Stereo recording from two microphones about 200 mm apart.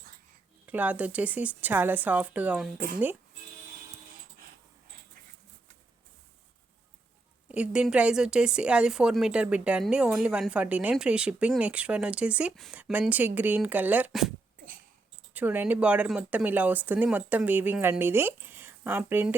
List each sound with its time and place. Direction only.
0.6 s speech: 10° right (ahead or behind)
2.7 s speech: 45° right (ahead or behind)
7.4 s a woman's voice: 5° right (ahead or behind)